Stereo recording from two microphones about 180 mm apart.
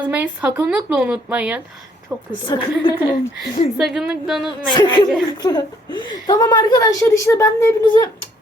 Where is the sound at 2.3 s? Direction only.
25° left (ahead or behind).